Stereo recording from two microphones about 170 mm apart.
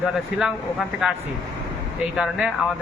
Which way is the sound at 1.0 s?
5° right (ahead or behind).